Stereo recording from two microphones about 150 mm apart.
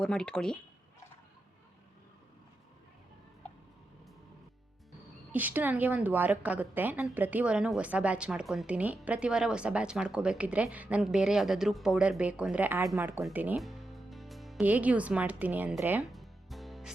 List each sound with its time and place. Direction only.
0.0 s speech: 5° left (ahead or behind)
5.3 s a woman's voice: 10° right (ahead or behind)
13.6 s music: centre (ahead or behind)
14.6 s a woman's voice: 10° right (ahead or behind)
16.0 s music: centre (ahead or behind)